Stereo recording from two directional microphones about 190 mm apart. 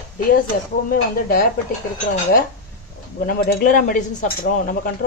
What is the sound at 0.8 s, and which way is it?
Speech, 45° left (ahead or behind).